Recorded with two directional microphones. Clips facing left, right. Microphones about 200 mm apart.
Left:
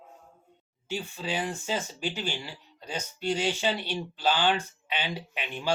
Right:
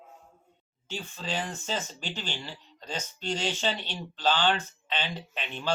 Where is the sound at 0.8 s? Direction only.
10° left (ahead or behind).